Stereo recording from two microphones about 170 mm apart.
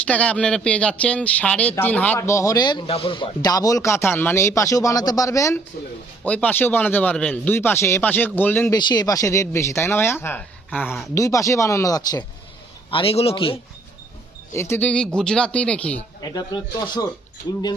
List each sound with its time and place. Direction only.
0.0 s speech: 10° left (ahead or behind)
8.7 s speech: 25° left (ahead or behind)
12.9 s speech: 30° left (ahead or behind)
14.5 s speech: 15° left (ahead or behind)
16.3 s speech: 25° left (ahead or behind)